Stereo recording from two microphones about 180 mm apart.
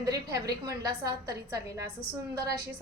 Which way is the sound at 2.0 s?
30° left (ahead or behind).